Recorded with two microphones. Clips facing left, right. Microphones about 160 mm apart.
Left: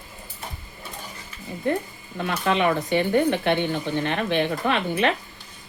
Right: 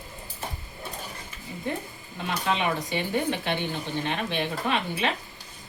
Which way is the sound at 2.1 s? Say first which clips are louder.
Left 5 dB; 60° left (ahead or behind).